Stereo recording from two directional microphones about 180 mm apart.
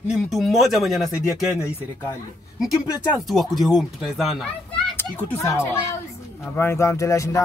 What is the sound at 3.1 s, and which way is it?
Speech, centre (ahead or behind).